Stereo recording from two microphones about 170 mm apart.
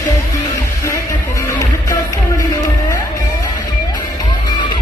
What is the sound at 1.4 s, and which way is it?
Music, 20° left (ahead or behind).